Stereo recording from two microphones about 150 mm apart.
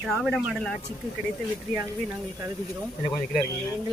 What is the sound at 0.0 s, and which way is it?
Speech, centre (ahead or behind).